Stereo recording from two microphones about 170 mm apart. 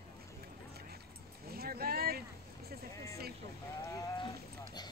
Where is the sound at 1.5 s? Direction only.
65° right (ahead or behind).